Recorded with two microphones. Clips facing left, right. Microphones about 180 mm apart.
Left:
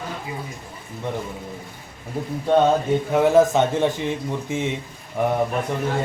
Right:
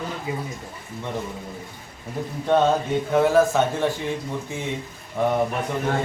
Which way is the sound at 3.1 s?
20° left (ahead or behind).